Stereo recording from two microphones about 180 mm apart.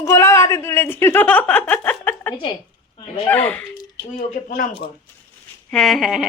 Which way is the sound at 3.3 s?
5° left (ahead or behind).